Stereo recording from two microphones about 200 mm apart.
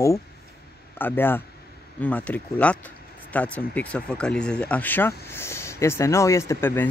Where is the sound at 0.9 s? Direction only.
10° left (ahead or behind).